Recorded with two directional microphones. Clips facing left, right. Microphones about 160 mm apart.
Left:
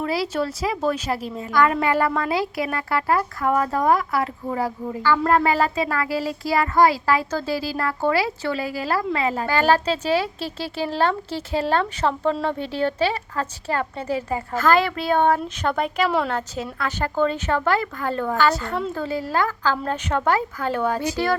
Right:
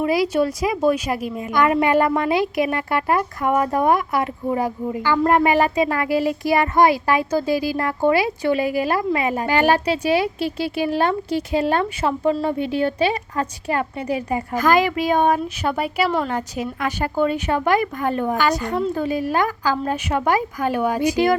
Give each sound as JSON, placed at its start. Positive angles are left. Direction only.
{"t": 0.0, "sound": "a woman's voice", "side_deg": -15}